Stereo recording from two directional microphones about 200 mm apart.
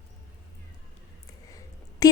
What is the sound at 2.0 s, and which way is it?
Speech, 20° left (ahead or behind).